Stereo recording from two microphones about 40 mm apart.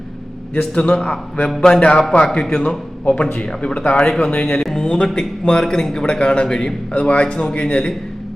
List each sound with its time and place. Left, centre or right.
0.7 s a man's voice: left
6.9 s a man's voice: left